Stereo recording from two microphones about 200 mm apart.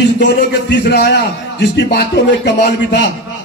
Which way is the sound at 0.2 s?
60° left (ahead or behind).